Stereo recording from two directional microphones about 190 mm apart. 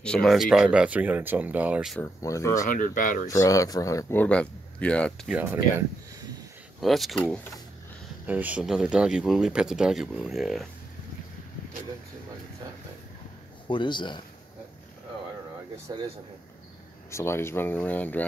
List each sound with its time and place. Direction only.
0.0 s speech: 5° left (ahead or behind)
2.0 s speech: 15° left (ahead or behind)
2.6 s speech: 45° left (ahead or behind)
3.3 s speech: 15° left (ahead or behind)
5.3 s speech: 10° right (ahead or behind)
8.3 s speech: 10° right (ahead or behind)
13.7 s speech: 25° left (ahead or behind)
15.9 s speech: 20° right (ahead or behind)
17.1 s speech: 15° left (ahead or behind)